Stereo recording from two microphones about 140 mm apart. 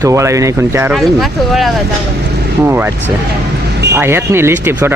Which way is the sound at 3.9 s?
15° right (ahead or behind).